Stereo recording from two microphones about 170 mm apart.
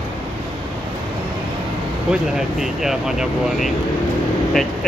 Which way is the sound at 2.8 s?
Centre (ahead or behind).